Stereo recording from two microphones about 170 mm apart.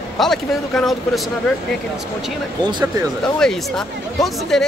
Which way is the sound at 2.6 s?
25° right (ahead or behind).